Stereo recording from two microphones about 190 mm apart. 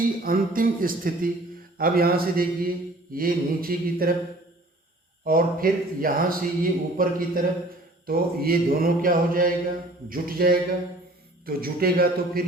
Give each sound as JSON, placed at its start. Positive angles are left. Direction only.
{"t": 0.2, "sound": "a man's voice", "side_deg": -50}
{"t": 5.2, "sound": "a man's voice", "side_deg": -50}